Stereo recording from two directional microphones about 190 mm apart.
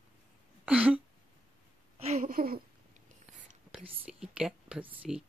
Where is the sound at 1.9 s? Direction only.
35° right (ahead or behind).